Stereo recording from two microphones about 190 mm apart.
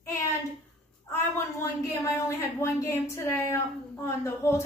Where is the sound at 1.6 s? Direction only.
15° left (ahead or behind).